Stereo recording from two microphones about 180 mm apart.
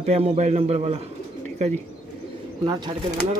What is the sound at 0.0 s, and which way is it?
A man's voice, 35° right (ahead or behind).